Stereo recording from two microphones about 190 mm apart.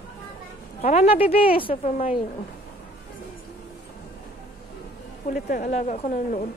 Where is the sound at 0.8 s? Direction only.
35° left (ahead or behind).